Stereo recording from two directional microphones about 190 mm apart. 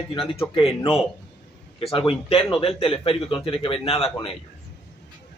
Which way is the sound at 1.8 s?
30° left (ahead or behind).